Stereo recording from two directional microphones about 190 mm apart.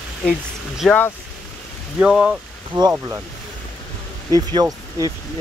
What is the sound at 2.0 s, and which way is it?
Speech, 5° right (ahead or behind).